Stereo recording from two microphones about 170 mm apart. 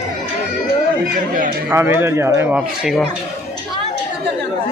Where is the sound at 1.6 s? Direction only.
10° right (ahead or behind).